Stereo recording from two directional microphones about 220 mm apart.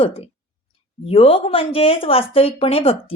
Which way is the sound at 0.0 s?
25° left (ahead or behind).